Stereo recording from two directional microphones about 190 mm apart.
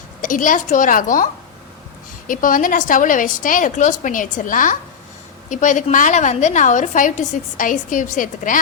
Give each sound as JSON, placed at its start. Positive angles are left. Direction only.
{"t": 0.2, "sound": "a woman's voice", "side_deg": 45}